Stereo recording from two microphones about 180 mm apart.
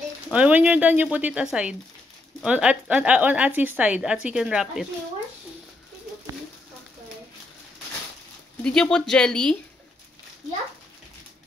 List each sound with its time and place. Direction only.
0.3 s a woman's voice: 5° right (ahead or behind)
8.6 s speech: 5° left (ahead or behind)